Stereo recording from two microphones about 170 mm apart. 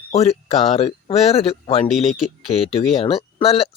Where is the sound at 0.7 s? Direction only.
35° left (ahead or behind).